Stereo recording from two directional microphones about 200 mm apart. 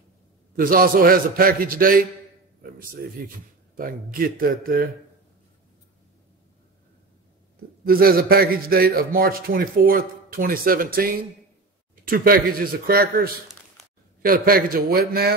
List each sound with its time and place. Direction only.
0.6 s a man's voice: 45° right (ahead or behind)
7.8 s a man's voice: 50° right (ahead or behind)